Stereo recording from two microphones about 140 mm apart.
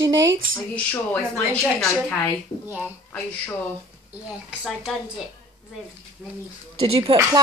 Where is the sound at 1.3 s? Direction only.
10° left (ahead or behind).